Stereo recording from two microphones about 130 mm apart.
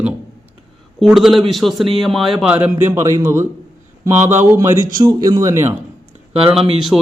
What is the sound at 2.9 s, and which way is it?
A man's voice, 20° right (ahead or behind).